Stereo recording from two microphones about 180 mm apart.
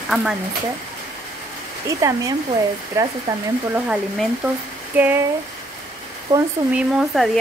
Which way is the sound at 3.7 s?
5° right (ahead or behind).